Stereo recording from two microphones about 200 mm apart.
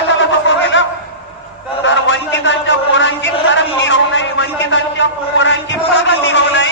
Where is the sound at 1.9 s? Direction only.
65° left (ahead or behind).